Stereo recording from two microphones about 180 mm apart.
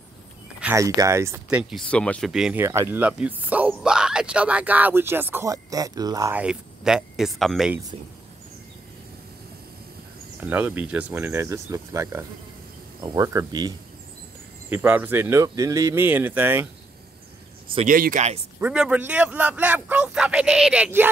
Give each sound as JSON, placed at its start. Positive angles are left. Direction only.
{"t": 0.6, "sound": "speech", "side_deg": -15}
{"t": 1.6, "sound": "speech", "side_deg": 0}
{"t": 2.6, "sound": "speech", "side_deg": -15}
{"t": 6.3, "sound": "speech", "side_deg": -5}
{"t": 10.4, "sound": "speech", "side_deg": -10}
{"t": 14.7, "sound": "speech", "side_deg": -10}
{"t": 17.8, "sound": "speech", "side_deg": -50}
{"t": 18.6, "sound": "speech", "side_deg": -5}